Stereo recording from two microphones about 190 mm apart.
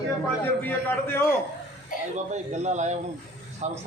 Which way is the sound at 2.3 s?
35° right (ahead or behind).